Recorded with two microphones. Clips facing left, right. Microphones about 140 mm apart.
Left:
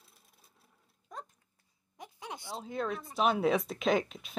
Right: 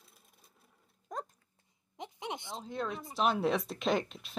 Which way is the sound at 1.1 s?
45° right (ahead or behind).